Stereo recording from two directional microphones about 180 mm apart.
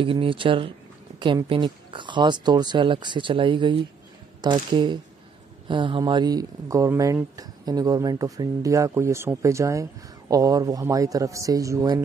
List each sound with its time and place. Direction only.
0.0 s speech: 30° right (ahead or behind)